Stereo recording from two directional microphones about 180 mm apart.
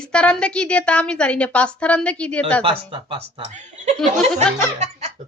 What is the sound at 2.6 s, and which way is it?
Speech, 30° right (ahead or behind).